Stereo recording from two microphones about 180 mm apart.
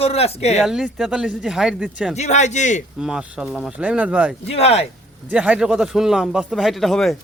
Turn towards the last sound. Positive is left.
turn(degrees=0)  # may be behind; listen again after turning